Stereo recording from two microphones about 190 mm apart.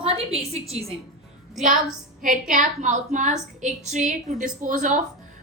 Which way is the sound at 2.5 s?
40° right (ahead or behind).